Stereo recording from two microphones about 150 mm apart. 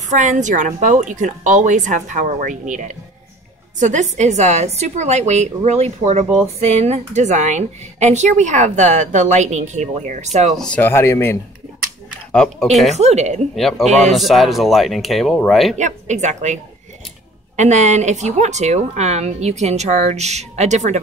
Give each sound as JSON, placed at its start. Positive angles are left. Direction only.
{"t": 0.1, "sound": "a woman's voice", "side_deg": -55}
{"t": 10.5, "sound": "speech", "side_deg": 5}
{"t": 12.3, "sound": "speech", "side_deg": 5}
{"t": 12.9, "sound": "speech", "side_deg": -50}
{"t": 13.6, "sound": "speech", "side_deg": 0}
{"t": 15.8, "sound": "speech", "side_deg": -50}
{"t": 17.6, "sound": "speech", "side_deg": -50}